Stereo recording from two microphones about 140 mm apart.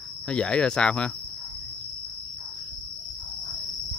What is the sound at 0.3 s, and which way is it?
Speech, 5° left (ahead or behind).